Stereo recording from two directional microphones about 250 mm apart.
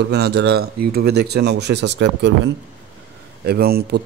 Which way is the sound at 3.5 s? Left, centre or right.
Right.